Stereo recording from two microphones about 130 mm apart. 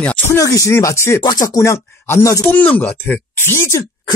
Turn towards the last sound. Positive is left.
turn(degrees=20)  # may be behind; listen again after turning